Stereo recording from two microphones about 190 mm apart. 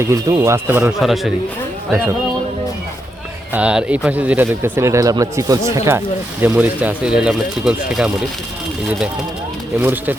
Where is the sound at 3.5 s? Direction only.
5° right (ahead or behind).